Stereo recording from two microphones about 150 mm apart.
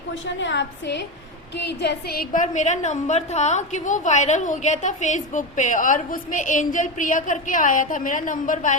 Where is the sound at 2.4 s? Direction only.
50° left (ahead or behind).